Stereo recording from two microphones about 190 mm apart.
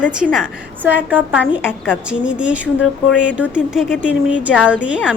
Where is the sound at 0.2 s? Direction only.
5° right (ahead or behind).